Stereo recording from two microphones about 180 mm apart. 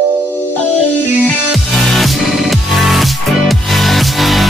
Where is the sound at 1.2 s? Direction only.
Centre (ahead or behind).